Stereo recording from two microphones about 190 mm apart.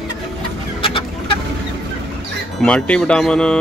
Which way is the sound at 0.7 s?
25° left (ahead or behind).